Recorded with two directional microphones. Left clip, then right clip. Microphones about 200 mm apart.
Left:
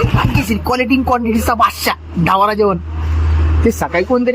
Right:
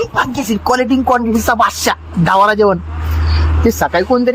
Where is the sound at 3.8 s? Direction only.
15° right (ahead or behind).